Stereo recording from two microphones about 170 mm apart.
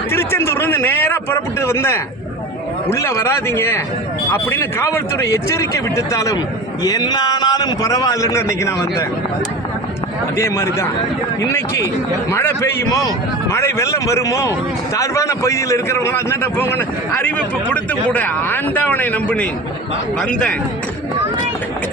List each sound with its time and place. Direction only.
0.1 s a sound: 15° left (ahead or behind)
2.9 s a man's voice: 15° left (ahead or behind)
10.3 s a man's voice: 15° left (ahead or behind)
13.5 s a man's voice: 15° left (ahead or behind)